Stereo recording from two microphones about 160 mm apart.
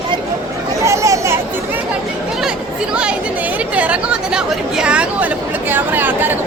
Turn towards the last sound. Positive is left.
turn(degrees=-10)  # may be behind; listen again after turning